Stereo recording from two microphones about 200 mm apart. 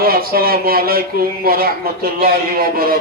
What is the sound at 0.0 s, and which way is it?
Speech, 50° right (ahead or behind).